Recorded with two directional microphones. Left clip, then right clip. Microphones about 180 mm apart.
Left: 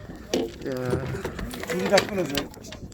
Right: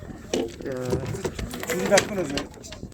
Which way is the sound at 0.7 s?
20° left (ahead or behind).